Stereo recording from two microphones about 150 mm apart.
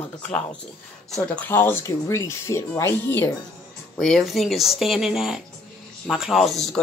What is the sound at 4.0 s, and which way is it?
A woman's voice, centre (ahead or behind).